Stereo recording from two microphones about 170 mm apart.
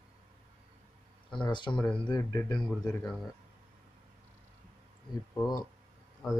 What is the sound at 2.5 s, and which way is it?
Speech, 5° left (ahead or behind).